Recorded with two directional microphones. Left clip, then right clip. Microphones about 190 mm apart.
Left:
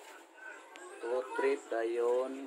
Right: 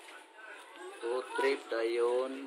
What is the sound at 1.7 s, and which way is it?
Speech, 5° left (ahead or behind).